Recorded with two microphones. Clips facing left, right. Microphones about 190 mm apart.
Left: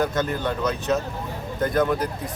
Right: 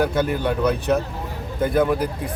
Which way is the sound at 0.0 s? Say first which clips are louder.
Right 3 dB; 10° right (ahead or behind).